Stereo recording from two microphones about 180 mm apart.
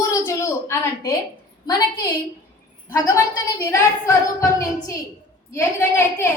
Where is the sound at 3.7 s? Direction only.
15° left (ahead or behind).